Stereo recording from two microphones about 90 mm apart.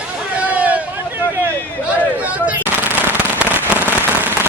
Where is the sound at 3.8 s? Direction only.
25° right (ahead or behind).